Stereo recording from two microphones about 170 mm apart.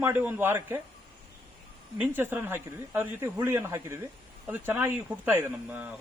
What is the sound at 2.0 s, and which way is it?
A man's voice, 10° right (ahead or behind).